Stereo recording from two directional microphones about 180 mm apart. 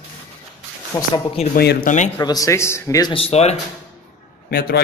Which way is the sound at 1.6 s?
60° left (ahead or behind).